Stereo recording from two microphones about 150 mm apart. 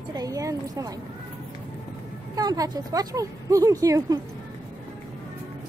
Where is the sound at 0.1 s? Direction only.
25° right (ahead or behind).